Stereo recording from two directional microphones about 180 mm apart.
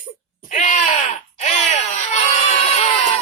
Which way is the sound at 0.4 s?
45° left (ahead or behind).